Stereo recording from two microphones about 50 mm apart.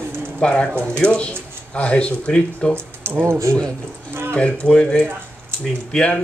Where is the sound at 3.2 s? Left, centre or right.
Right.